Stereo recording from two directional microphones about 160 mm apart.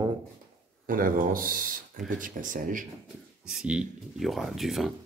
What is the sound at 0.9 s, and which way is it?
Speech, 60° right (ahead or behind).